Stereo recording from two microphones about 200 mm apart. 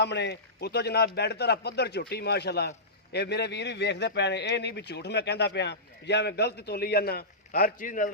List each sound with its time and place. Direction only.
0.0 s a man's voice: 60° left (ahead or behind); by 8.1 s 40° left (ahead or behind)